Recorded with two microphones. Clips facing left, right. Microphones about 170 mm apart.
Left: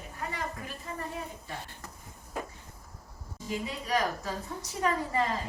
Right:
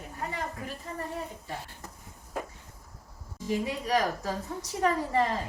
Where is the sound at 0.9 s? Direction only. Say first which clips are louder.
Even; 35° right (ahead or behind).